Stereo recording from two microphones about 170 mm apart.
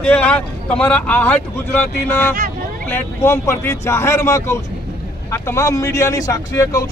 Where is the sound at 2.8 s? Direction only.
15° left (ahead or behind).